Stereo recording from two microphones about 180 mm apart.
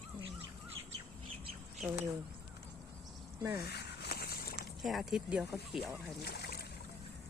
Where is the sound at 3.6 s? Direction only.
65° left (ahead or behind).